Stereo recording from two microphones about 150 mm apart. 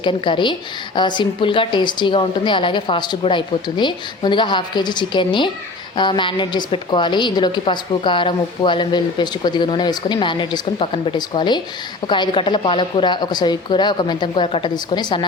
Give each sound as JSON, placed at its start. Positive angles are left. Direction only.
{"t": 0.0, "sound": "a woman's voice", "side_deg": 30}